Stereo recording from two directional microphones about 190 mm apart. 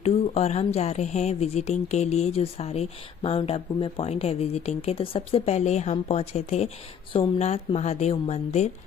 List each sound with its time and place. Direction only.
0.0 s speech: 35° left (ahead or behind)